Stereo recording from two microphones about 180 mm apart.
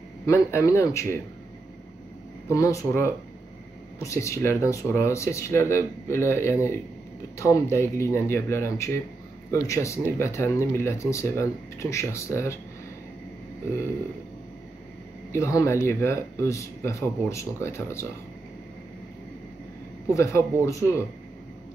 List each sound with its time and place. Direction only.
0.3 s speech: 15° left (ahead or behind)
2.4 s speech: 15° left (ahead or behind)
15.3 s speech: 15° left (ahead or behind)
20.2 s speech: 15° left (ahead or behind)